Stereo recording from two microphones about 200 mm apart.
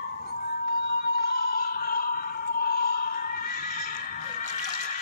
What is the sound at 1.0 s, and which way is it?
Music, 50° left (ahead or behind).